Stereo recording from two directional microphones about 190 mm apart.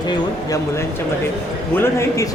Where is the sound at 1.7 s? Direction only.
15° left (ahead or behind).